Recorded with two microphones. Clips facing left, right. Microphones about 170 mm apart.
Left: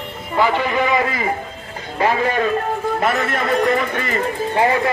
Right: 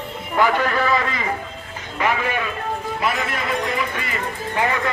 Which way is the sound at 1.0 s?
25° left (ahead or behind).